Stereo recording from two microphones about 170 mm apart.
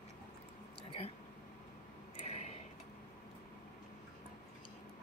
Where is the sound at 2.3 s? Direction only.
40° left (ahead or behind).